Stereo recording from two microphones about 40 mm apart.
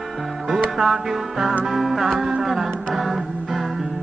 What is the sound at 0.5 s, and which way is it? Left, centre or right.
Music, centre.